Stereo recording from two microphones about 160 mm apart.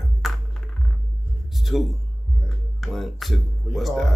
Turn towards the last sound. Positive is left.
turn(degrees=0)  # may be behind; listen again after turning